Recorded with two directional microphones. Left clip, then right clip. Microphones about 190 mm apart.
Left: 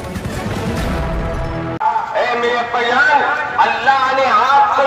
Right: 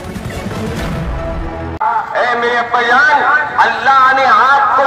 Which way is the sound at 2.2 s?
5° left (ahead or behind).